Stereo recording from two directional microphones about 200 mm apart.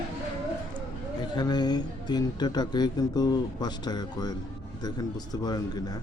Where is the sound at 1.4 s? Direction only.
20° left (ahead or behind).